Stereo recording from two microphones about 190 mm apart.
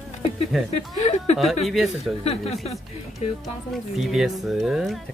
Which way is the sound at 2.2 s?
30° left (ahead or behind).